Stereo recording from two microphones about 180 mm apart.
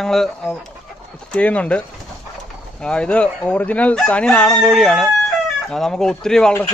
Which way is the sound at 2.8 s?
5° left (ahead or behind).